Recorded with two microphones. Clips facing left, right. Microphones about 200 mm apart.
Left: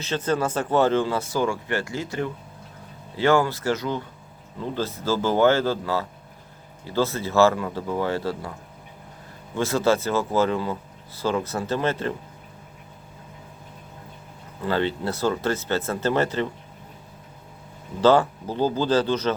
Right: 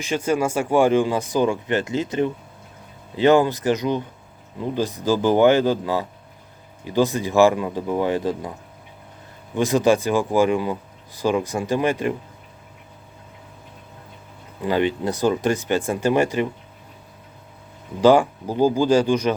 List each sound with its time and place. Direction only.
0.0 s speech: 10° right (ahead or behind)
9.6 s speech: 15° right (ahead or behind)
14.6 s speech: 15° right (ahead or behind)
18.0 s speech: 15° right (ahead or behind)